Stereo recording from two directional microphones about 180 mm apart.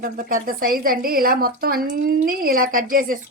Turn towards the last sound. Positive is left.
turn(degrees=-50)  # may be behind; listen again after turning